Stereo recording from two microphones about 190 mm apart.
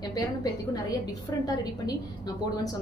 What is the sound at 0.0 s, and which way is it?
A woman's voice, 20° left (ahead or behind).